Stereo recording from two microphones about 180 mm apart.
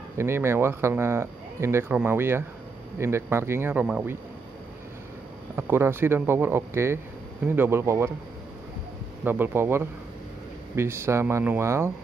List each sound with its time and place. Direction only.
0.2 s speech: 15° right (ahead or behind)
5.6 s speech: 10° right (ahead or behind)
9.2 s speech: 10° right (ahead or behind)